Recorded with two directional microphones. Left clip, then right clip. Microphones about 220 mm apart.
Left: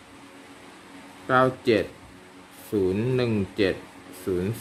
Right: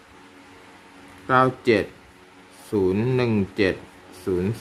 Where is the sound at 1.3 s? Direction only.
15° right (ahead or behind).